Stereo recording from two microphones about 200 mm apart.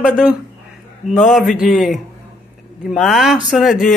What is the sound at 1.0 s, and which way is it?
Speech, 35° left (ahead or behind).